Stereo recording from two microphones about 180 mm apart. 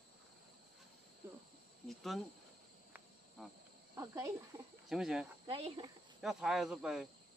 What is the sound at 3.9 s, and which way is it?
Speech, 15° right (ahead or behind).